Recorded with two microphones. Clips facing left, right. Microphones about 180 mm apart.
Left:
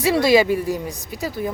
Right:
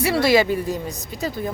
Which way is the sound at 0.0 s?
15° left (ahead or behind).